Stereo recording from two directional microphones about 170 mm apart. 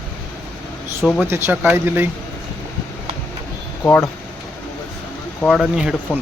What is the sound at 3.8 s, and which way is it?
Speech, 15° left (ahead or behind).